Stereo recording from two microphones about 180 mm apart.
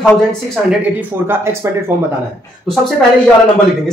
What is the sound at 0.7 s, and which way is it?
Speech, 10° right (ahead or behind).